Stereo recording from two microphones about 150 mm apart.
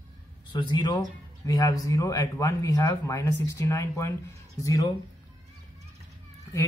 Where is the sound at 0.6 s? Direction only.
30° left (ahead or behind).